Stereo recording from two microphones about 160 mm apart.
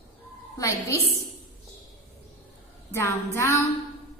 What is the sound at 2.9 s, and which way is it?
Speech, 15° left (ahead or behind).